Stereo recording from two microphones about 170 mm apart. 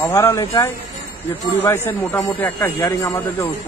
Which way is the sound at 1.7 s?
15° left (ahead or behind).